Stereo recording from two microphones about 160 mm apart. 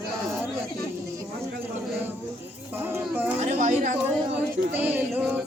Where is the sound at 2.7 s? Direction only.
10° right (ahead or behind).